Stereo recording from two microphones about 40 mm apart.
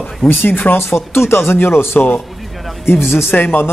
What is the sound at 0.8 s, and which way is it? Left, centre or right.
Speech, left.